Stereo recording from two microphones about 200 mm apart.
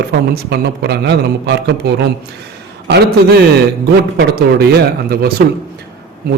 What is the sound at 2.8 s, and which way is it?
Speech, 55° right (ahead or behind).